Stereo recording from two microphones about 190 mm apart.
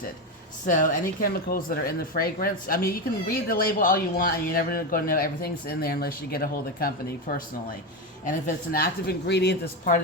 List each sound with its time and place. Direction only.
0.6 s speech: 40° left (ahead or behind)